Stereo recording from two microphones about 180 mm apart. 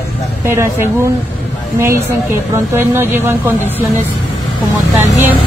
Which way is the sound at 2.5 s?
15° right (ahead or behind).